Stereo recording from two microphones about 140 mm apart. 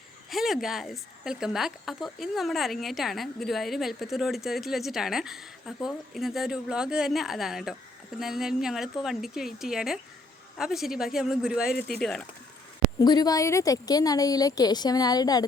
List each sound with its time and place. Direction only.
0.3 s speech: centre (ahead or behind)
11.7 s speech: 90° left
11.9 s speech: 5° left (ahead or behind)
13.1 s a woman's voice: 30° left (ahead or behind)